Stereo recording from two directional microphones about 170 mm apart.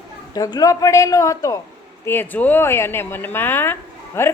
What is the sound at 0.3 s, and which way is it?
A woman's voice, 20° left (ahead or behind).